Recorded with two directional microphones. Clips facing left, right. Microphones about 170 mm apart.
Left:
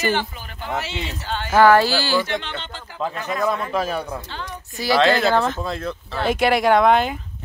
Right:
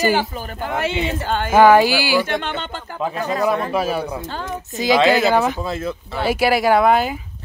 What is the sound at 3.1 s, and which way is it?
Speech, 35° right (ahead or behind).